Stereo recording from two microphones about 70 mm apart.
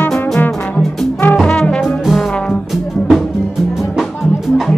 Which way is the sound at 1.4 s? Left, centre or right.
Centre.